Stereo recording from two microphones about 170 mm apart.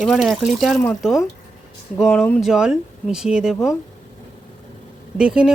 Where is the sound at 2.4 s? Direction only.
5° right (ahead or behind).